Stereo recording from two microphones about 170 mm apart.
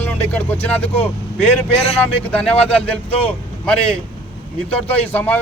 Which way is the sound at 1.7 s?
35° left (ahead or behind).